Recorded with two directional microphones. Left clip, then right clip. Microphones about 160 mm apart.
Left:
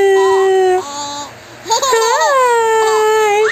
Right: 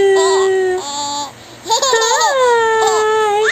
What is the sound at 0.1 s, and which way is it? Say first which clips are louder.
Baby cry: left 1 dB; 20° right (ahead or behind).